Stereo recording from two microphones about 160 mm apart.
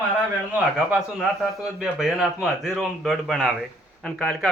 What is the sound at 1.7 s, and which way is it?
Speech, 5° right (ahead or behind).